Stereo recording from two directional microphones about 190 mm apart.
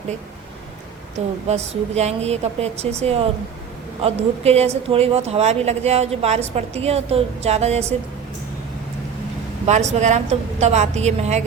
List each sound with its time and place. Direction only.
1.5 s speech: 35° right (ahead or behind)
9.6 s speech: 40° right (ahead or behind)